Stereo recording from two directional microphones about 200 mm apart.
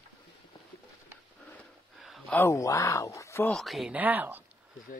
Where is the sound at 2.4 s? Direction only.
15° left (ahead or behind).